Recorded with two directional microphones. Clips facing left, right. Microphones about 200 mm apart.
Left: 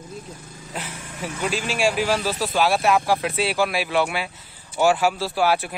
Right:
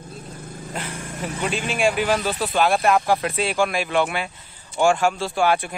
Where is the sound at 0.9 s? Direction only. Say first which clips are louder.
Right 2 dB; 45° right (ahead or behind).